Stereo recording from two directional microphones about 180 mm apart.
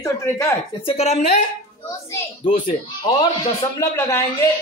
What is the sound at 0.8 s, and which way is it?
Speech, 35° left (ahead or behind).